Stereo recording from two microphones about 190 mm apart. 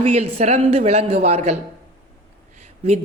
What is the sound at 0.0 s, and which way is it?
A man's voice, 35° right (ahead or behind).